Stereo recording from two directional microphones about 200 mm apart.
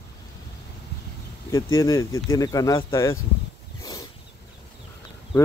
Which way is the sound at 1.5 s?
15° left (ahead or behind).